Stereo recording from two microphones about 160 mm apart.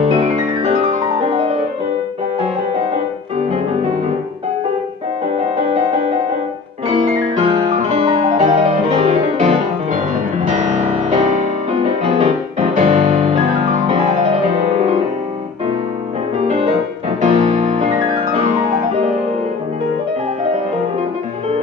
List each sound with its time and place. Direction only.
0.0 s music: 40° right (ahead or behind)
6.9 s music: 45° right (ahead or behind)
10.5 s music: 50° right (ahead or behind)
11.8 s music: 35° right (ahead or behind)
12.5 s music: 50° right (ahead or behind)
14.5 s music: 40° right (ahead or behind)
17.2 s music: 50° right (ahead or behind)